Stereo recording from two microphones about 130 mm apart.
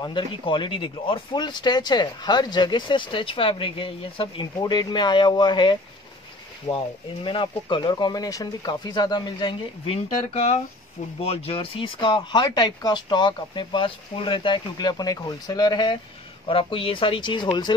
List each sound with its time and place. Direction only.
0.0 s speech: 40° left (ahead or behind)
7.2 s speech: 40° left (ahead or behind)